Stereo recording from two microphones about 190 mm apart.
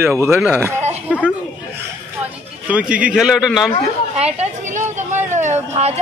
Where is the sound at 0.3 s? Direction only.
10° right (ahead or behind).